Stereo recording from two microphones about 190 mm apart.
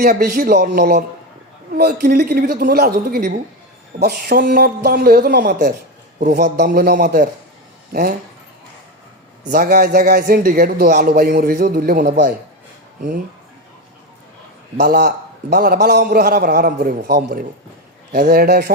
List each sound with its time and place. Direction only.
0.1 s a man's voice: 50° right (ahead or behind)
6.6 s a man's voice: 55° right (ahead or behind)
9.5 s a man's voice: 55° right (ahead or behind)
14.8 s a man's voice: 55° right (ahead or behind)